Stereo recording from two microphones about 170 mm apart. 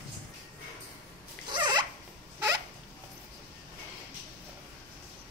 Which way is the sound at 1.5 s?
25° right (ahead or behind).